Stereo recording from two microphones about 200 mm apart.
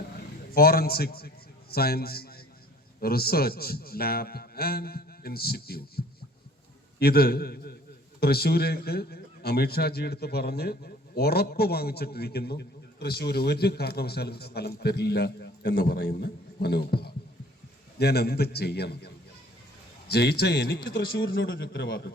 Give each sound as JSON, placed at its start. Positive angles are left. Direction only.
{"t": 0.5, "sound": "a man's voice", "side_deg": 50}
{"t": 21.4, "sound": "a man's voice", "side_deg": 50}